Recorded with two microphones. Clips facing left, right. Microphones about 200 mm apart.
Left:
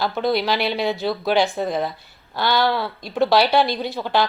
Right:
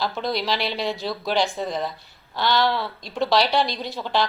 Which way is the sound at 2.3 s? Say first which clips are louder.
Left 2 dB; 5° left (ahead or behind).